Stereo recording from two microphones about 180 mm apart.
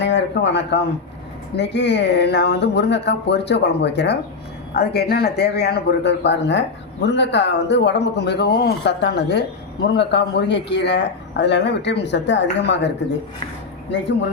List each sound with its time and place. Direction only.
0.0 s a man's voice: 80° left